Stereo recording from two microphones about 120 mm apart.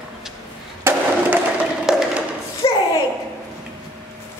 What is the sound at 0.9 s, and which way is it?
Skateboard, 20° right (ahead or behind).